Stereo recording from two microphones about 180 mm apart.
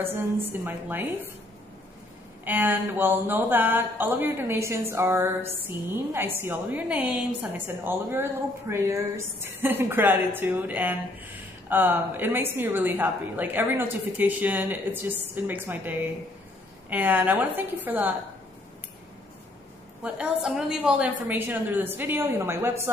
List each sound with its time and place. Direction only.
0.0 s speech: 10° right (ahead or behind)
2.4 s speech: 10° right (ahead or behind)
20.0 s a woman's voice: 5° right (ahead or behind)